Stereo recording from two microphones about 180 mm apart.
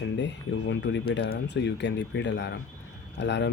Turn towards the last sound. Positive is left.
turn(degrees=80)